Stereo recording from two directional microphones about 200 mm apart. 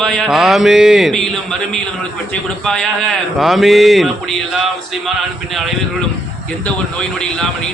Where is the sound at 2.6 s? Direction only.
5° left (ahead or behind).